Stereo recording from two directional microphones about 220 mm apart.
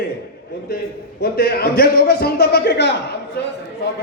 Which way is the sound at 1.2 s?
45° left (ahead or behind).